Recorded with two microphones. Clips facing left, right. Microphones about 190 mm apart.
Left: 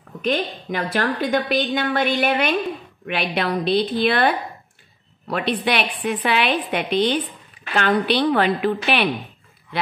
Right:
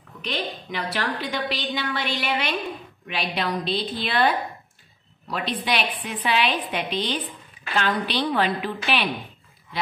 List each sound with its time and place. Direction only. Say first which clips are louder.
0.2 s a woman's voice: left 7 dB; 50° left (ahead or behind)